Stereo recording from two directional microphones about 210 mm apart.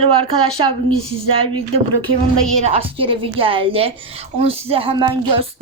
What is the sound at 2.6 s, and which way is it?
A woman's voice, 25° right (ahead or behind).